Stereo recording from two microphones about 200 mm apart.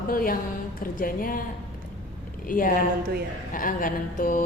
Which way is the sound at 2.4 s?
45° left (ahead or behind).